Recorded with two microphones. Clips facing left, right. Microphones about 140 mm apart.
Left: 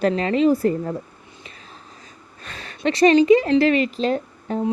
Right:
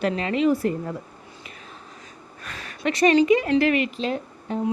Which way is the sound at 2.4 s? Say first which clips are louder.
Left 3 dB; 30° left (ahead or behind).